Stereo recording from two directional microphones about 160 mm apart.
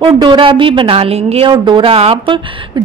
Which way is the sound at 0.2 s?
30° right (ahead or behind).